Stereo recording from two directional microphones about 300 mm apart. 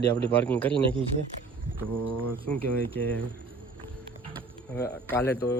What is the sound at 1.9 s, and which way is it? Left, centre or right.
Speech, right.